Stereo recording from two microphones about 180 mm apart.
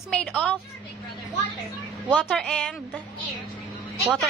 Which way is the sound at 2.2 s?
Centre (ahead or behind).